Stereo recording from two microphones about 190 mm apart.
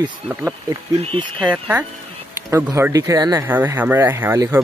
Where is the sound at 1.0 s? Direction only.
30° right (ahead or behind).